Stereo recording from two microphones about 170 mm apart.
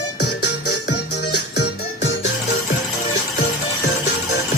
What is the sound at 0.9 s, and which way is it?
Music, 80° left.